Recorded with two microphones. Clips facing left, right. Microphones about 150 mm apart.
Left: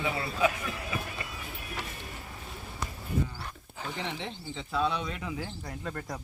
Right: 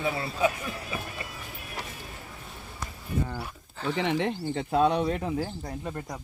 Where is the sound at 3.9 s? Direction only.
65° right (ahead or behind); by 5.7 s 40° right (ahead or behind).